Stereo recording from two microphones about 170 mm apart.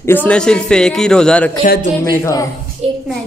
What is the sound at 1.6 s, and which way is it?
Speech, 50° left (ahead or behind).